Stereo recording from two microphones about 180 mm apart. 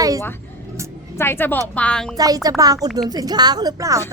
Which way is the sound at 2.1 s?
20° right (ahead or behind).